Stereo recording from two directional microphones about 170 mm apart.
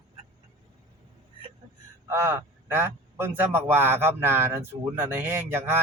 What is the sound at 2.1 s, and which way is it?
A man's voice, 15° right (ahead or behind).